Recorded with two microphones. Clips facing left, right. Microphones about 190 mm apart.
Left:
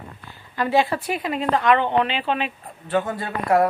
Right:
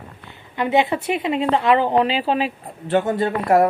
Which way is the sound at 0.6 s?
20° right (ahead or behind).